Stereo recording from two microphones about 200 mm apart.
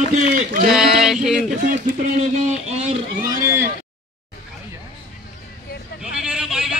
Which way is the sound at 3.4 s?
15° right (ahead or behind).